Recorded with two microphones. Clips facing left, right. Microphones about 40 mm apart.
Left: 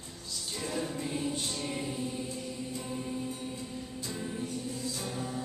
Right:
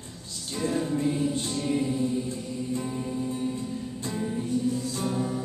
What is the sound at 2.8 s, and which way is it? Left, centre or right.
Music, centre.